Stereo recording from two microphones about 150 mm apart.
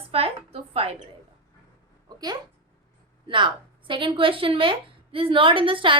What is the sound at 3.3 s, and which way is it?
A woman's voice, 35° right (ahead or behind).